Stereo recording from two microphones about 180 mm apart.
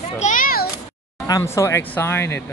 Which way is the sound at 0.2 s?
45° left (ahead or behind).